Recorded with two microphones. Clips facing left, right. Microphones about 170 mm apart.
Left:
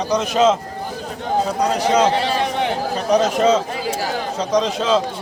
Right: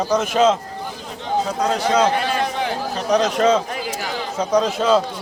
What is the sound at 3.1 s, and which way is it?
A man's voice, 5° left (ahead or behind).